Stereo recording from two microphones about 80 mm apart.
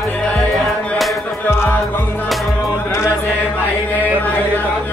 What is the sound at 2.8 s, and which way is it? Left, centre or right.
Chant, left.